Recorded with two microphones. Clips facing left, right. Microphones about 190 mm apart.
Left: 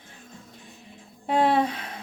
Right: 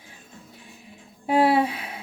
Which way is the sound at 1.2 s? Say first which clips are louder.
Right 2 dB; 10° right (ahead or behind).